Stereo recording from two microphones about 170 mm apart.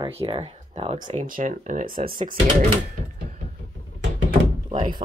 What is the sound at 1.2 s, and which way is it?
Speech, 50° right (ahead or behind).